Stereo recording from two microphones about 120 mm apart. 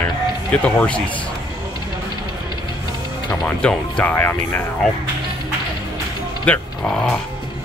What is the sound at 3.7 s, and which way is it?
Speech, 10° left (ahead or behind).